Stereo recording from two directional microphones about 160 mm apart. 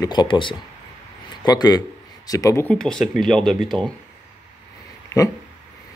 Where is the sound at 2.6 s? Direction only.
5° left (ahead or behind).